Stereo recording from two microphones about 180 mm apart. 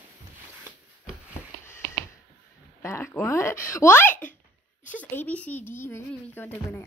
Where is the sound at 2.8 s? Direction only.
15° left (ahead or behind).